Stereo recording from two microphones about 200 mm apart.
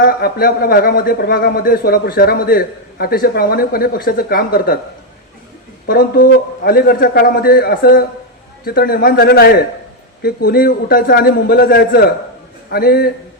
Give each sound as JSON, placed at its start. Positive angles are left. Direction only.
{"t": 0.0, "sound": "a man's voice", "side_deg": 45}
{"t": 5.8, "sound": "a woman's voice", "side_deg": 50}